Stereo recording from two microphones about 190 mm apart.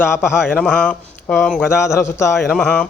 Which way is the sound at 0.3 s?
10° left (ahead or behind).